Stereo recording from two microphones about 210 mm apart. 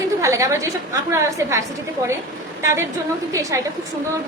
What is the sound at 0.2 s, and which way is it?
A woman's voice, 15° right (ahead or behind).